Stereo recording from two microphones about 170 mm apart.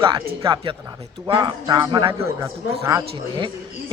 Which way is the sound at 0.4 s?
30° right (ahead or behind).